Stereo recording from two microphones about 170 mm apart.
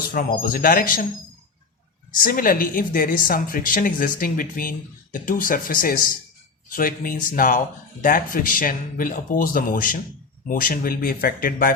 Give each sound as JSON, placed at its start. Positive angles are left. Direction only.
{"t": 0.0, "sound": "a woman's voice", "side_deg": 60}
{"t": 2.2, "sound": "a woman's voice", "side_deg": 55}